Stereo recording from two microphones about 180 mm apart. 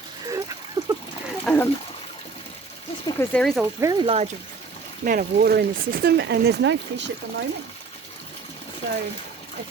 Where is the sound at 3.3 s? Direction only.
Centre (ahead or behind).